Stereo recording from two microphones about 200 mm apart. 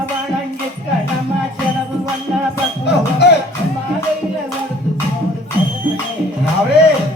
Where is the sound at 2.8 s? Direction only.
55° left (ahead or behind).